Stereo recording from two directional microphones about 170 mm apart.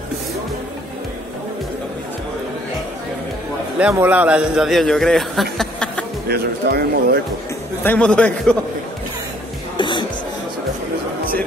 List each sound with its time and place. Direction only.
3.8 s a man's voice: 10° right (ahead or behind)
6.2 s speech: 65° right (ahead or behind)
7.8 s a man's voice: 10° left (ahead or behind)
9.8 s music: 30° left (ahead or behind)